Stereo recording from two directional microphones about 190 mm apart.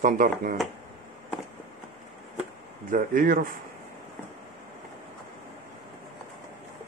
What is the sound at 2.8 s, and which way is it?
Speech, 45° right (ahead or behind).